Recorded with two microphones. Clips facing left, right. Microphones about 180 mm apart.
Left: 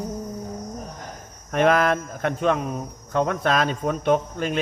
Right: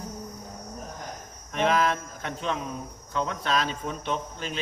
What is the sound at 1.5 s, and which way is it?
Speech, 55° left (ahead or behind).